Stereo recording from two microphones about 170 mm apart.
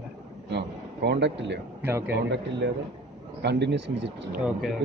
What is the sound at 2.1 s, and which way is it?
Speech, 90° right.